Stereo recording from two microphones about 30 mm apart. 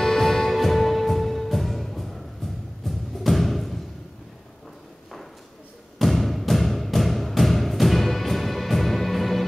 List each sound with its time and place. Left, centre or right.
0.0 s music: centre
5.9 s music: centre